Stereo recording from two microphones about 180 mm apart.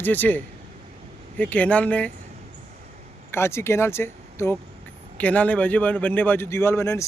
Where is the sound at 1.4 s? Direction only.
10° left (ahead or behind).